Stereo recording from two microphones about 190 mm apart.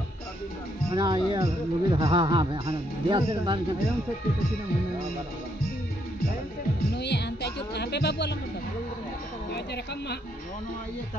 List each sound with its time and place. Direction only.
0.9 s speech: 25° right (ahead or behind)
7.0 s music: 60° left (ahead or behind)